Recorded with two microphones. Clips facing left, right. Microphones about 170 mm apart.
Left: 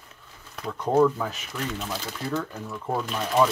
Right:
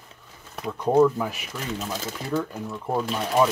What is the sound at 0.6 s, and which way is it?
Speech, 10° right (ahead or behind).